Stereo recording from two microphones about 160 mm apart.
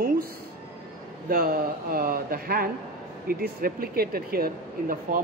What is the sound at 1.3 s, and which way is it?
Speech, 70° right (ahead or behind).